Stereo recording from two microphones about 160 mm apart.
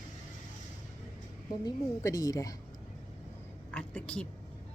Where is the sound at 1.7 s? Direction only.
20° left (ahead or behind).